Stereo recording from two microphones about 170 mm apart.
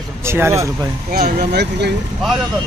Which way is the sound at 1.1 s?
60° right (ahead or behind).